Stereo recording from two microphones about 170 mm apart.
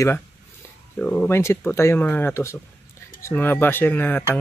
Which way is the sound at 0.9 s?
5° left (ahead or behind).